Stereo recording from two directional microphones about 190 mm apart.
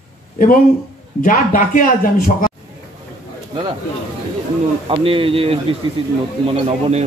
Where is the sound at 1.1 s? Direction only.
45° left (ahead or behind).